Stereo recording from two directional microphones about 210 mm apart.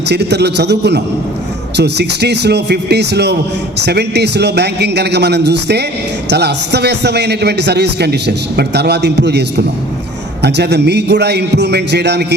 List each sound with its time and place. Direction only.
0.1 s a man's voice: 55° right (ahead or behind)